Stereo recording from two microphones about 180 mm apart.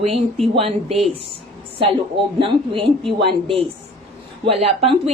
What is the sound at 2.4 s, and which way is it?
Speech, 30° right (ahead or behind).